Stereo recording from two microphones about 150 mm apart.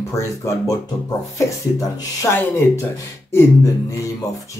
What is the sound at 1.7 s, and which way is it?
Speech, 20° left (ahead or behind).